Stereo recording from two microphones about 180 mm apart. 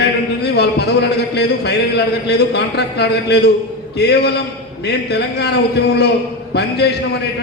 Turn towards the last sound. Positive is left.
turn(degrees=65)  # may be behind; listen again after turning